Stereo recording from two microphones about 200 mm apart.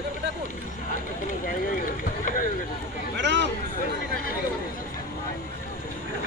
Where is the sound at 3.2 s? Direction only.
65° right (ahead or behind).